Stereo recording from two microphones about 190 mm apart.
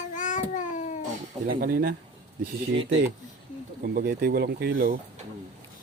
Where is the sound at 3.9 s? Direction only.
50° right (ahead or behind).